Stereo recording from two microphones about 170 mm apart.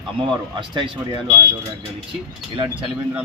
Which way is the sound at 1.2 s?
15° right (ahead or behind).